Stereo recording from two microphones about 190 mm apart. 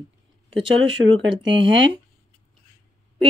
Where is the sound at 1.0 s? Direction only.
90° right.